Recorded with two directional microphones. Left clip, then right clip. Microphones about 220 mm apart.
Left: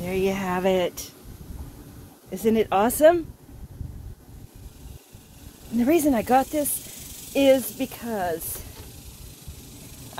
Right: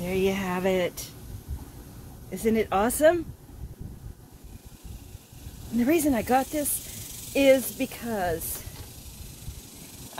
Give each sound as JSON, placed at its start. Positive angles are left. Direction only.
{"t": 0.0, "sound": "speech", "side_deg": 10}
{"t": 2.3, "sound": "speech", "side_deg": 20}
{"t": 5.8, "sound": "speech", "side_deg": 15}